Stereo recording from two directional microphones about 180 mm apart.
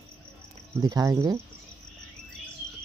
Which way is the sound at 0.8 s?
20° right (ahead or behind).